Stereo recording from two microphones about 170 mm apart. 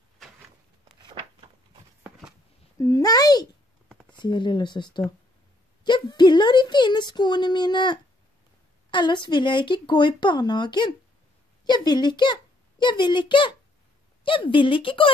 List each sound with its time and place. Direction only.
2.8 s a woman's voice: 20° left (ahead or behind)